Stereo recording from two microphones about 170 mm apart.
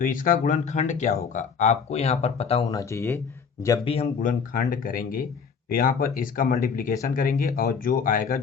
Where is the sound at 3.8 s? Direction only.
35° left (ahead or behind).